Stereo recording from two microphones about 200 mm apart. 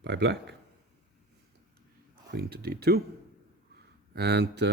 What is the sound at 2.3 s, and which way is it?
Speech, 50° right (ahead or behind).